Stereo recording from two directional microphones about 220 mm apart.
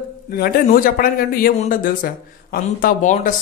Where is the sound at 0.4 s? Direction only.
40° left (ahead or behind).